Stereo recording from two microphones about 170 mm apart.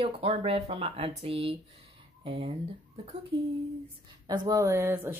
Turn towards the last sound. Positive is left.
turn(degrees=-10)  # may be behind; listen again after turning